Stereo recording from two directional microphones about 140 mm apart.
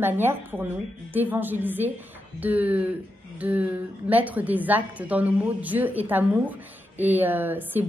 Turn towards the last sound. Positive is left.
turn(degrees=-15)  # may be behind; listen again after turning